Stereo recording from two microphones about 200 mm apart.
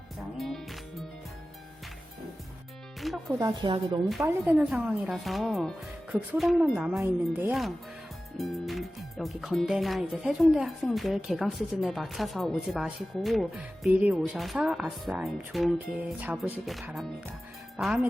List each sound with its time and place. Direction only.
0.3 s music: centre (ahead or behind)
3.0 s speech: centre (ahead or behind)
3.3 s a woman's voice: 15° right (ahead or behind)
4.2 s speech: 5° right (ahead or behind)